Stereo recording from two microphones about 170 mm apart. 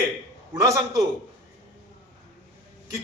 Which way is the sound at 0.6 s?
20° right (ahead or behind).